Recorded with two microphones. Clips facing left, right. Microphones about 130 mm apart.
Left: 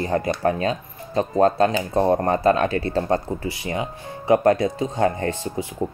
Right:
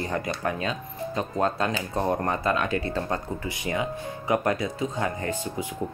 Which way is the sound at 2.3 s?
40° left (ahead or behind).